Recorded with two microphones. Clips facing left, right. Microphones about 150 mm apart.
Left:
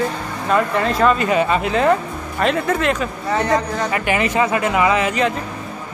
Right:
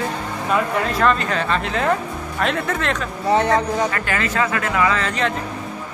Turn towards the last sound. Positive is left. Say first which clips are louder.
# left 4 dB
turn(degrees=5)  # may be behind; listen again after turning